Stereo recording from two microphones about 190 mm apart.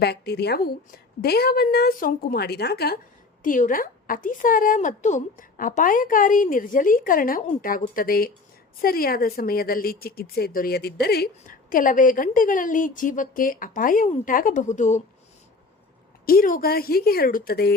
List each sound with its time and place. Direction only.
0.0 s a woman's voice: 60° left (ahead or behind)
3.4 s speech: 45° left (ahead or behind)
16.2 s speech: 50° left (ahead or behind)